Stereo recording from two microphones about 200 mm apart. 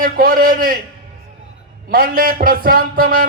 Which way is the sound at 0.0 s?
45° right (ahead or behind).